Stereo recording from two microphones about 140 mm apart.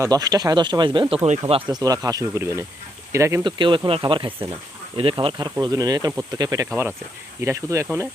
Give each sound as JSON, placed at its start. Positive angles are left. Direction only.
{"t": 0.0, "sound": "speech", "side_deg": -25}
{"t": 3.4, "sound": "speech", "side_deg": -35}